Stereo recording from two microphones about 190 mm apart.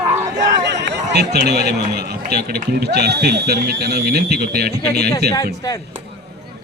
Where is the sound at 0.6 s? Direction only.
65° right (ahead or behind).